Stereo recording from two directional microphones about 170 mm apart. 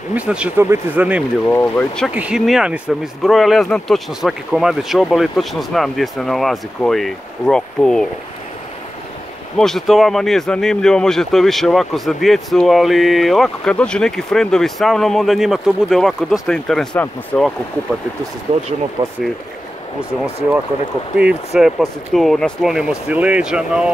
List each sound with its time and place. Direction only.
0.1 s speech: 5° right (ahead or behind)
1.5 s speech: 10° left (ahead or behind)
2.0 s speech: 5° right (ahead or behind)
9.6 s speech: centre (ahead or behind)
19.0 s speech: 20° right (ahead or behind)
21.2 s speech: 5° right (ahead or behind)